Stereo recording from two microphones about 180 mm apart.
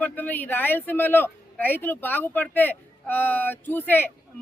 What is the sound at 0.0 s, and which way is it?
A woman's voice, 10° left (ahead or behind).